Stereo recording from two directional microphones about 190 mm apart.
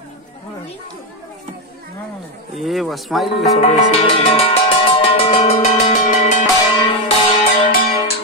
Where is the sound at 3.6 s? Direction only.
30° left (ahead or behind).